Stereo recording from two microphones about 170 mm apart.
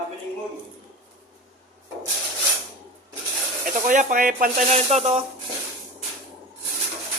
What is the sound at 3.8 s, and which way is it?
Speech, 50° right (ahead or behind).